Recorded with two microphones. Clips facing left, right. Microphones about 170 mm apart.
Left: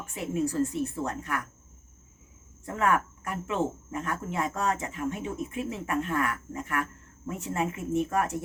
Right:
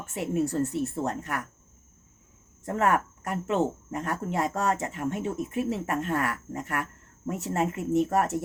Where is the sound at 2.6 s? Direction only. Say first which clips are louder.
Right 2 dB; 40° right (ahead or behind).